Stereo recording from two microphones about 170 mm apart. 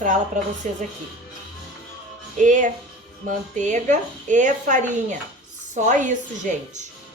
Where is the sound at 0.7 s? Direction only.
50° right (ahead or behind).